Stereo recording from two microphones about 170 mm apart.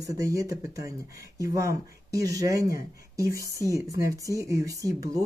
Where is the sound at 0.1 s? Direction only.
20° right (ahead or behind).